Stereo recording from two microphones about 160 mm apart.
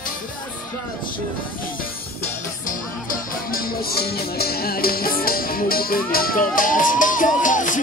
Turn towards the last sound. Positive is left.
turn(degrees=55)  # may be behind; listen again after turning